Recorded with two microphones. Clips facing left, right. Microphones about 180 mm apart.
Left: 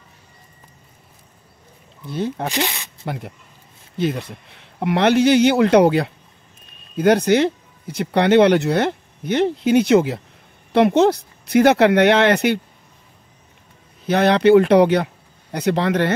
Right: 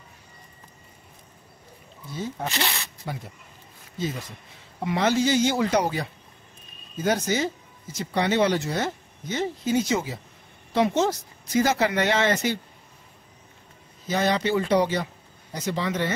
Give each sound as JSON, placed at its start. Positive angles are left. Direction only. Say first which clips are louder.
{"t": 2.0, "sound": "speech", "louder": "left 7 dB", "side_deg": 65}
{"t": 2.5, "sound": "speech", "louder": "left 6 dB", "side_deg": 15}
{"t": 3.1, "sound": "speech", "louder": "left 8 dB", "side_deg": 65}
{"t": 14.0, "sound": "speech", "louder": "left 10 dB", "side_deg": 65}